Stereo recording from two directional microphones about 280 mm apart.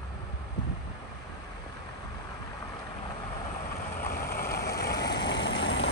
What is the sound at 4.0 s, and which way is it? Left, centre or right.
Vehicle, left.